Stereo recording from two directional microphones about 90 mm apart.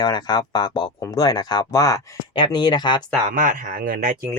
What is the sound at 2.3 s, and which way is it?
Speech, 50° left (ahead or behind).